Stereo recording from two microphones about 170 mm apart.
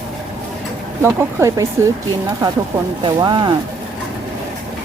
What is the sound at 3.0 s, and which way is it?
Speech, 25° right (ahead or behind).